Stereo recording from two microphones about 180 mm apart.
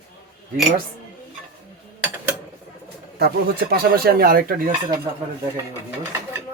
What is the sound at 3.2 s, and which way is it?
Speech, 60° right (ahead or behind).